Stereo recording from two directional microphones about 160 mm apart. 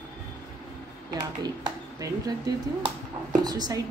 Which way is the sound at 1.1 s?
25° right (ahead or behind).